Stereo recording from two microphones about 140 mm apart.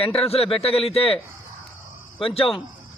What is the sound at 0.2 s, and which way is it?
A man's voice, 45° left (ahead or behind).